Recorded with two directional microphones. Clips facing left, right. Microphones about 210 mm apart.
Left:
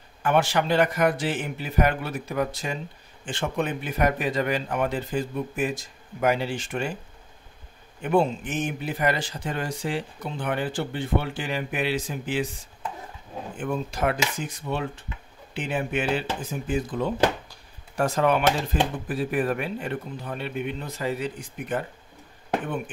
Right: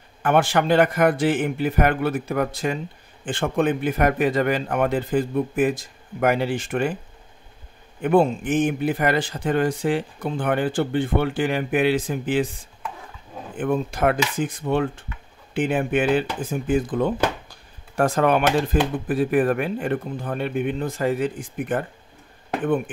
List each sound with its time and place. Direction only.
0.2 s a man's voice: 50° right (ahead or behind)
8.0 s speech: 55° right (ahead or behind)
13.6 s speech: 55° right (ahead or behind)